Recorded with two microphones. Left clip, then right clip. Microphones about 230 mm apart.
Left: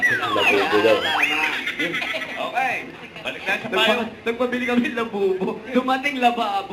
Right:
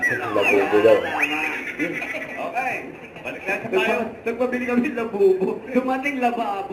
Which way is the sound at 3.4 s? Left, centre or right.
Centre.